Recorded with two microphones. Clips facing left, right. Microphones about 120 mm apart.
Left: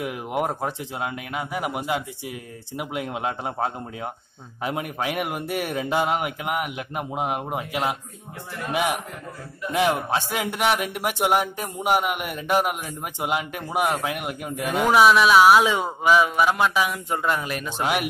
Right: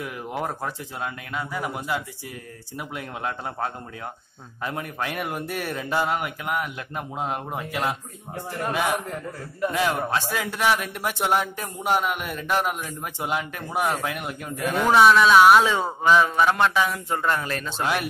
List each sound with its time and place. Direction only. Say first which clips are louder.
0.0 s a man's voice: left 4 dB; 20° left (ahead or behind)
9.8 s a man's voice: left 4 dB; 20° left (ahead or behind)